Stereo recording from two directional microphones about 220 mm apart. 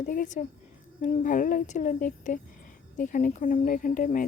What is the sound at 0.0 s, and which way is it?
Speech, 35° left (ahead or behind).